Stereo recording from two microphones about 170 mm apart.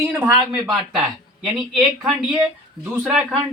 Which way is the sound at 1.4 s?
Centre (ahead or behind).